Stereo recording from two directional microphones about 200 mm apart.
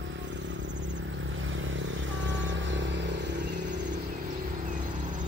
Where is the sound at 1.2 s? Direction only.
75° right (ahead or behind).